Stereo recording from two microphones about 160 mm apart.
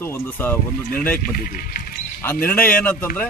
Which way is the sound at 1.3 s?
65° left (ahead or behind).